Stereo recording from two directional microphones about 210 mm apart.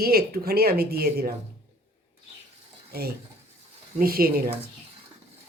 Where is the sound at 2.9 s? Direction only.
45° right (ahead or behind).